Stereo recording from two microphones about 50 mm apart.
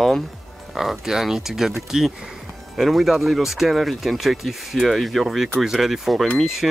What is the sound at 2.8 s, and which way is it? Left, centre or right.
Speech, centre.